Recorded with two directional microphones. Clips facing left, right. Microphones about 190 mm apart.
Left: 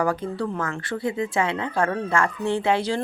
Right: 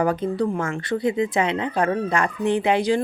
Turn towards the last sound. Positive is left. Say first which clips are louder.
# right 3 dB
turn(degrees=-15)  # may be behind; listen again after turning